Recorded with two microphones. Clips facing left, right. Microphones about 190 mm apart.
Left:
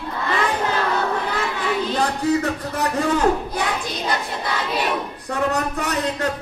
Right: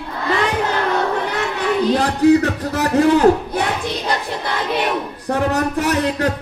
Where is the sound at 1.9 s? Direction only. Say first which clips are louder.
Right 8 dB; 80° right.